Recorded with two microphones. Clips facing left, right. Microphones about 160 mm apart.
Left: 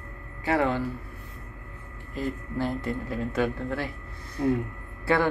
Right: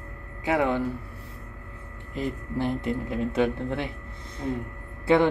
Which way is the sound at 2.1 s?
20° right (ahead or behind).